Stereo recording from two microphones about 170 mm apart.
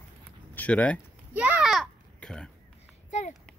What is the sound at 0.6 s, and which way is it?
Speech, 10° left (ahead or behind).